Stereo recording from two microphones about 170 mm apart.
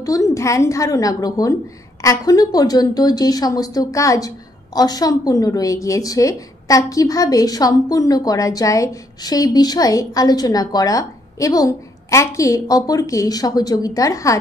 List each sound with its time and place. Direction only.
0.0 s a woman's voice: 20° left (ahead or behind)